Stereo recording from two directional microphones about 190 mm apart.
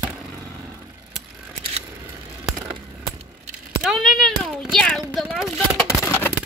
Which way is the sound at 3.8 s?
Centre (ahead or behind).